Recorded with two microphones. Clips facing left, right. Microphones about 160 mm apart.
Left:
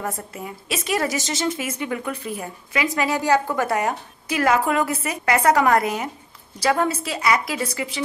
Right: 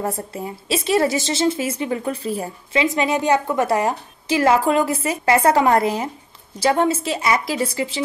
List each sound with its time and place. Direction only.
0.0 s a woman's voice: 30° right (ahead or behind)